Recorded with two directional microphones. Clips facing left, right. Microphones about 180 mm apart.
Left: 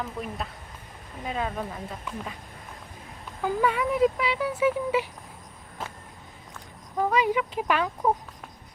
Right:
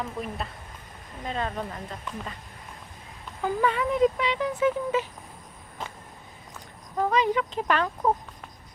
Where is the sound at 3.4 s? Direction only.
10° left (ahead or behind).